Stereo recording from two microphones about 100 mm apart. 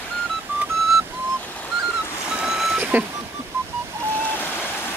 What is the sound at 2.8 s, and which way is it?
Vehicle, 15° right (ahead or behind).